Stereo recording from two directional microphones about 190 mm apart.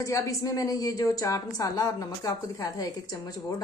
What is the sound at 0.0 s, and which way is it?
A woman's voice, 15° left (ahead or behind).